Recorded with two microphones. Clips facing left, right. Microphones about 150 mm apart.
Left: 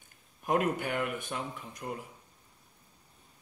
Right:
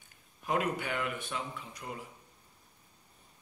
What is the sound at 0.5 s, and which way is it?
Speech, 45° left (ahead or behind).